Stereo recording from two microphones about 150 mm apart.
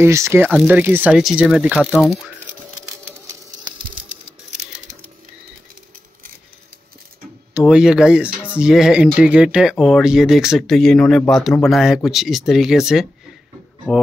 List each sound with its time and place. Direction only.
0.0 s speech: 20° right (ahead or behind)
2.8 s a sound: 20° right (ahead or behind)
7.5 s speech: 5° right (ahead or behind)